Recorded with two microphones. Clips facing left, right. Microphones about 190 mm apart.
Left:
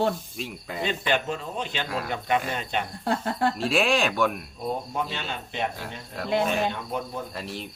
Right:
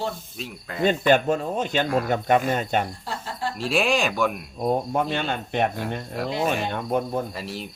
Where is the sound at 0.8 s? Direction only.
45° right (ahead or behind).